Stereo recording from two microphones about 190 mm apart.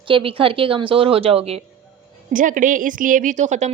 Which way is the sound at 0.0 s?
30° right (ahead or behind).